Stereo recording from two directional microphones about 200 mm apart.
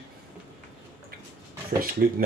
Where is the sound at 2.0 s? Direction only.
50° right (ahead or behind).